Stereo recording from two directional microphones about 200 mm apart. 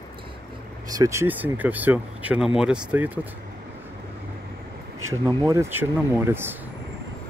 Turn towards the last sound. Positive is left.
turn(degrees=-10)  # may be behind; listen again after turning